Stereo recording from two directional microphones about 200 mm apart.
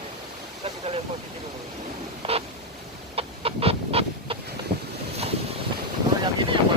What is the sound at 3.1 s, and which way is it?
Chicken, 30° right (ahead or behind).